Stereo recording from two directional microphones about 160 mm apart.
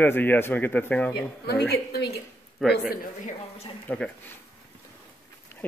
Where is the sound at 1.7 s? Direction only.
90° left.